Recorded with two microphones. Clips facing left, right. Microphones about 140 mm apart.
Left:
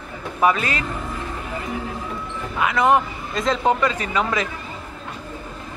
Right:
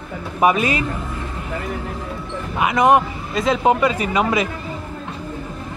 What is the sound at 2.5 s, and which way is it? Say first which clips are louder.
Speech: right 3 dB; 15° right (ahead or behind).